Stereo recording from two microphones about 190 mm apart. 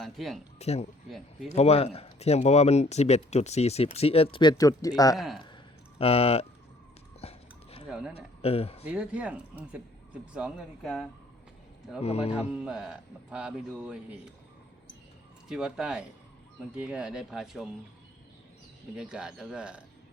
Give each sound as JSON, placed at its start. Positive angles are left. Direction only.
{"t": 0.0, "sound": "a man's voice", "side_deg": 0}
{"t": 0.6, "sound": "speech", "side_deg": 35}
{"t": 5.1, "sound": "a man's voice", "side_deg": 0}
{"t": 6.0, "sound": "speech", "side_deg": 30}
{"t": 7.2, "sound": "a sound", "side_deg": 30}
{"t": 7.9, "sound": "speech", "side_deg": -5}
{"t": 8.1, "sound": "speech", "side_deg": 30}
{"t": 8.9, "sound": "a man's voice", "side_deg": -5}
{"t": 11.9, "sound": "speech", "side_deg": 35}
{"t": 12.5, "sound": "a man's voice", "side_deg": -5}
{"t": 15.4, "sound": "a man's voice", "side_deg": -5}
{"t": 18.9, "sound": "a man's voice", "side_deg": -5}